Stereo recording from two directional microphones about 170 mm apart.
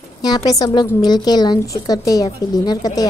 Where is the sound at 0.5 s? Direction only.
20° left (ahead or behind).